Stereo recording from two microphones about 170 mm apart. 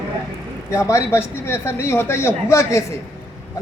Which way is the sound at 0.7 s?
15° left (ahead or behind).